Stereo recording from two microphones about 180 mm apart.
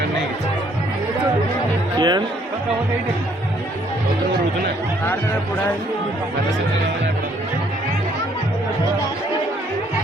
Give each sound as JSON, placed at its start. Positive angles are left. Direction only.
{"t": 2.0, "sound": "music", "side_deg": -25}